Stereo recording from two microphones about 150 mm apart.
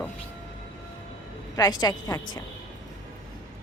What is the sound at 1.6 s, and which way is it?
Speech, 25° left (ahead or behind).